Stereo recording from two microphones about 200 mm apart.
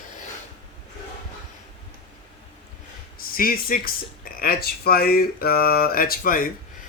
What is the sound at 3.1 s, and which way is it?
Speech, 45° left (ahead or behind).